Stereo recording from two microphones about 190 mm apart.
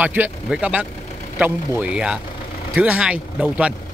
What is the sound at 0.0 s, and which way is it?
Speech, 10° right (ahead or behind).